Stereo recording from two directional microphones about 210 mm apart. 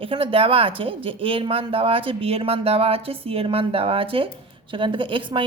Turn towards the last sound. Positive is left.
turn(degrees=-25)  # may be behind; listen again after turning